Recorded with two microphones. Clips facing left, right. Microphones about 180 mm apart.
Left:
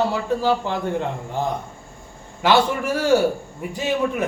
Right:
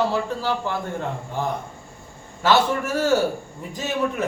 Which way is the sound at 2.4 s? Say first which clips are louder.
Left 1 dB; 15° left (ahead or behind).